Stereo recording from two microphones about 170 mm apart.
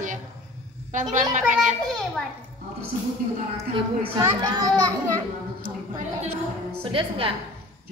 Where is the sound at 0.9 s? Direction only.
50° right (ahead or behind).